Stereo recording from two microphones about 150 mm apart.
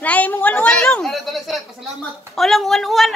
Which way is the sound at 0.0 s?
10° left (ahead or behind).